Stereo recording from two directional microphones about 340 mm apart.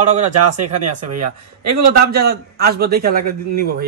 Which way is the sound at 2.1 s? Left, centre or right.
Right.